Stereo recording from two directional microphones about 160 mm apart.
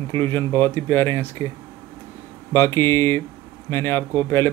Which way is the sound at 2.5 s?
15° left (ahead or behind).